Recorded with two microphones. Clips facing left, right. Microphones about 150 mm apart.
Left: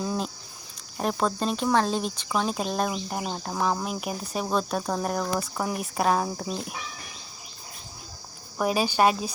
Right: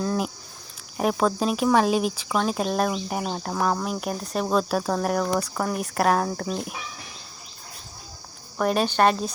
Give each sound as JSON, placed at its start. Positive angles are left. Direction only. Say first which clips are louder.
{"t": 0.9, "sound": "speech", "louder": "right 4 dB", "side_deg": -5}
{"t": 8.5, "sound": "speech", "louder": "right 2 dB", "side_deg": 5}